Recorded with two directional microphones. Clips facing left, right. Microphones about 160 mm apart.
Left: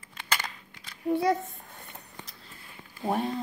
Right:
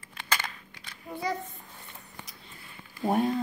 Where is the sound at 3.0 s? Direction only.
Centre (ahead or behind).